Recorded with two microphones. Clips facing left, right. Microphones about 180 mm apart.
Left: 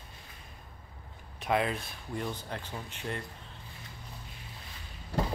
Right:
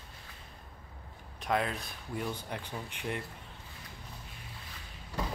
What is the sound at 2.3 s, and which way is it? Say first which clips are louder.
Speech: even; 10° right (ahead or behind).